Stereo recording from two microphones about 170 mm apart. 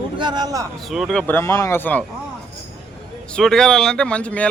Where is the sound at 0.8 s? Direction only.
Centre (ahead or behind).